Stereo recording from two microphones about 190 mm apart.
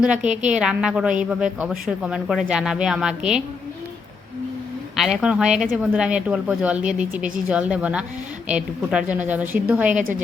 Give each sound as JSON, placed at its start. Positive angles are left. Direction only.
{"t": 0.0, "sound": "a woman's voice", "side_deg": -5}
{"t": 0.3, "sound": "a woman's voice", "side_deg": -40}
{"t": 0.6, "sound": "a woman's voice", "side_deg": -5}
{"t": 4.9, "sound": "a woman's voice", "side_deg": -5}
{"t": 9.9, "sound": "a woman's voice", "side_deg": -40}